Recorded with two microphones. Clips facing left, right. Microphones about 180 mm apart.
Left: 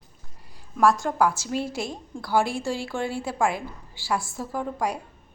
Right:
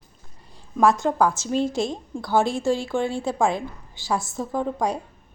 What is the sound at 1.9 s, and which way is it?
A woman's voice, 20° right (ahead or behind).